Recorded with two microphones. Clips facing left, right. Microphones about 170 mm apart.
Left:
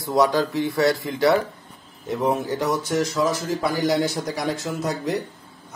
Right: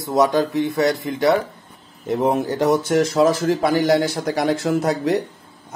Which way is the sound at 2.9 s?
55° right (ahead or behind).